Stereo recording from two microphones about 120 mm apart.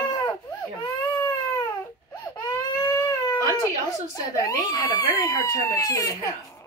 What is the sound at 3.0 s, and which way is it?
Baby cry, 30° left (ahead or behind).